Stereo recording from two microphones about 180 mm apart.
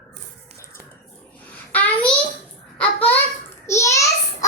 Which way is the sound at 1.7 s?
10° left (ahead or behind).